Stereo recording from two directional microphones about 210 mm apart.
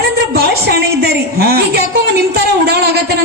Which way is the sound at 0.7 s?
50° right (ahead or behind).